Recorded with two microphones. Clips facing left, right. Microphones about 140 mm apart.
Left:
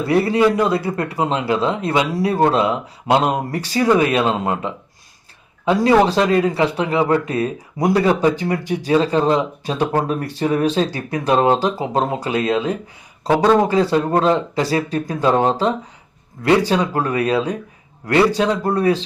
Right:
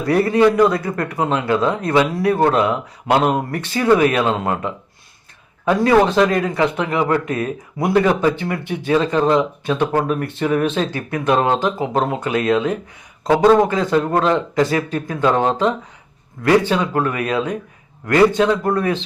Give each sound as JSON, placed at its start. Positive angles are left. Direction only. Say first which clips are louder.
{"t": 0.0, "sound": "speech", "louder": "right 1 dB", "side_deg": 25}
{"t": 3.6, "sound": "speech", "louder": "left 3 dB", "side_deg": 35}
{"t": 4.3, "sound": "speech", "louder": "even", "side_deg": 25}
{"t": 6.1, "sound": "speech", "louder": "even", "side_deg": 30}
{"t": 13.2, "sound": "speech", "louder": "right 2 dB", "side_deg": 5}
{"t": 13.7, "sound": "speech", "louder": "left 1 dB", "side_deg": 35}